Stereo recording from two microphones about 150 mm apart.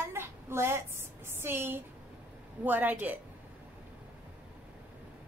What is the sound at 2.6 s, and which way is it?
Speech, 10° right (ahead or behind).